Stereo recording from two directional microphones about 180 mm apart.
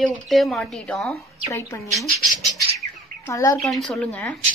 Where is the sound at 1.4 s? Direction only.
15° left (ahead or behind).